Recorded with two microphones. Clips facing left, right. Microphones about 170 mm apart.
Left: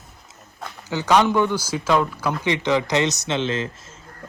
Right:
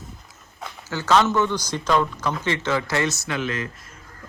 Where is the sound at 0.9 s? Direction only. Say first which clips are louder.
Left 1 dB; 15° left (ahead or behind).